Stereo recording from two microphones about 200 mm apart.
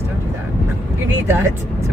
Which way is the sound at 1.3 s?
10° right (ahead or behind).